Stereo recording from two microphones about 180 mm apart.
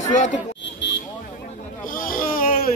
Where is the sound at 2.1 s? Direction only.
50° left (ahead or behind).